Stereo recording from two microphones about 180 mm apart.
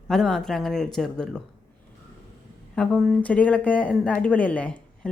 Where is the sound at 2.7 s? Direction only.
5° left (ahead or behind).